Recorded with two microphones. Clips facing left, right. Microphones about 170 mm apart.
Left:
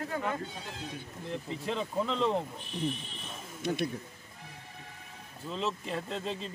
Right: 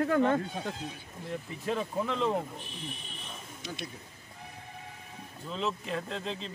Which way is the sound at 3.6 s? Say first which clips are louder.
Left 10 dB; 55° left (ahead or behind).